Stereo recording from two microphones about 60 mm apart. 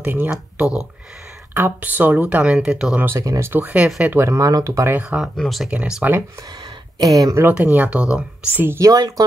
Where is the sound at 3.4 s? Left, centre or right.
Right.